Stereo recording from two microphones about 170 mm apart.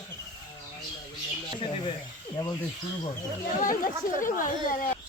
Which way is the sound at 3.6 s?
50° left (ahead or behind).